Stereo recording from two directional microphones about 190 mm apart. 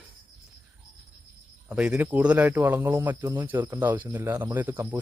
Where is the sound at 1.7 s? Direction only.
5° right (ahead or behind).